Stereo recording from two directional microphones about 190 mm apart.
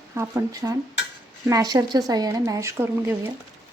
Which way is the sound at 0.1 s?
15° right (ahead or behind).